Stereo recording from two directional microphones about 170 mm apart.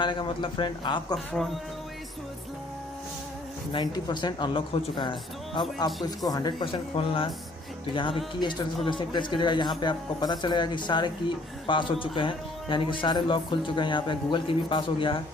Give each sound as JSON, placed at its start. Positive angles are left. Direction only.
{"t": 0.0, "sound": "speech", "side_deg": 30}
{"t": 1.1, "sound": "speech", "side_deg": 0}
{"t": 3.7, "sound": "speech", "side_deg": 25}